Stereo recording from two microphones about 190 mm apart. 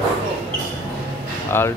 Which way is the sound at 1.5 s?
10° left (ahead or behind).